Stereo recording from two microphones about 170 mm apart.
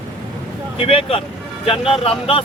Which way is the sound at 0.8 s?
35° left (ahead or behind).